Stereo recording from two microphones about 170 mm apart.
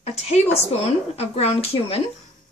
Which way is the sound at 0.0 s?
40° left (ahead or behind).